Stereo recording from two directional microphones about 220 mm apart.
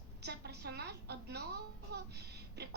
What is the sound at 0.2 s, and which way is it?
A woman's voice, 50° right (ahead or behind).